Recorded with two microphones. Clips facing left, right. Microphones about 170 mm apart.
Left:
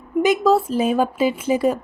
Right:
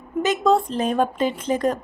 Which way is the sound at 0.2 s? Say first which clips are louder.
Left 3 dB; 5° left (ahead or behind).